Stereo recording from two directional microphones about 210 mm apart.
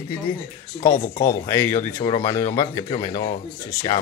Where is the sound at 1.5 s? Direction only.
10° left (ahead or behind).